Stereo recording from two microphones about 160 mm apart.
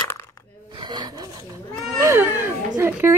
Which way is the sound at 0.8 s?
25° right (ahead or behind).